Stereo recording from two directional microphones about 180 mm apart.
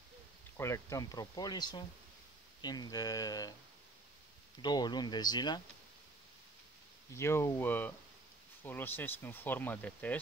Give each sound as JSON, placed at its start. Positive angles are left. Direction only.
{"t": 0.6, "sound": "speech", "side_deg": 15}
{"t": 4.6, "sound": "speech", "side_deg": 25}
{"t": 7.2, "sound": "speech", "side_deg": 15}